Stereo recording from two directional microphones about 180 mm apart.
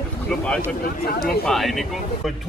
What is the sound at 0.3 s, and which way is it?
A man's voice, 5° left (ahead or behind).